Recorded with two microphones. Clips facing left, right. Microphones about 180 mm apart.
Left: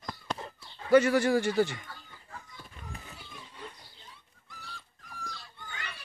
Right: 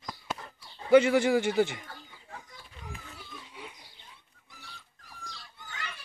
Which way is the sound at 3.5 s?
10° right (ahead or behind).